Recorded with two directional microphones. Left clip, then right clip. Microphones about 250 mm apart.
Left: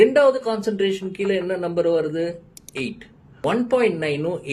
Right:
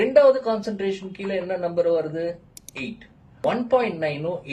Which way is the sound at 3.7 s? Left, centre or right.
Left.